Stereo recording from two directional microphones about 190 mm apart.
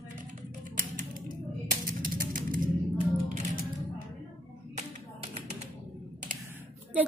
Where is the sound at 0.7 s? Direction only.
45° right (ahead or behind).